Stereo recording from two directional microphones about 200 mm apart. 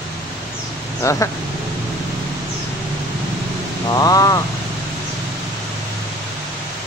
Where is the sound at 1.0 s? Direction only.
15° left (ahead or behind).